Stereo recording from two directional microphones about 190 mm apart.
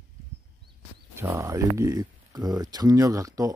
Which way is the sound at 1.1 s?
15° right (ahead or behind).